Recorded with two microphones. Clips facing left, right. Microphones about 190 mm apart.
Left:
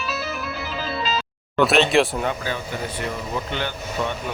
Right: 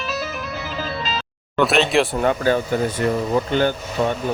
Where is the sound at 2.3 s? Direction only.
50° right (ahead or behind).